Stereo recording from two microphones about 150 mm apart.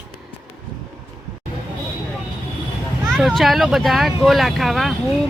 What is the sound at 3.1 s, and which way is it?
Speech, centre (ahead or behind).